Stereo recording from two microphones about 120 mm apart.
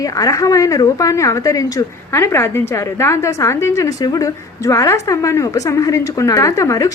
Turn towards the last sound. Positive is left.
turn(degrees=25)  # may be behind; listen again after turning